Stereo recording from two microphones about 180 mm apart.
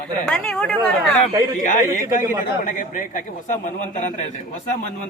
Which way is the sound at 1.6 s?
45° left (ahead or behind).